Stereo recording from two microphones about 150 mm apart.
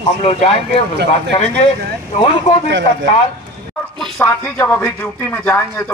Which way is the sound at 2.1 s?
45° left (ahead or behind).